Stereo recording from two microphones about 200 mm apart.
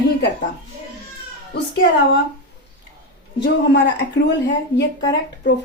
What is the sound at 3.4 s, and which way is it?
Speech, 60° left (ahead or behind).